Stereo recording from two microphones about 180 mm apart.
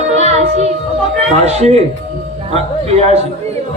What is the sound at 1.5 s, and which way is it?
Speech, 35° right (ahead or behind).